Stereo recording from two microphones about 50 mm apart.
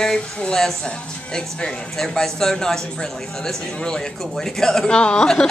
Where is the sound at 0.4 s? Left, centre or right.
Centre.